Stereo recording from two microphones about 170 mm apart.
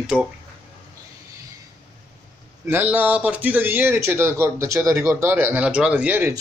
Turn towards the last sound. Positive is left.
turn(degrees=-10)  # may be behind; listen again after turning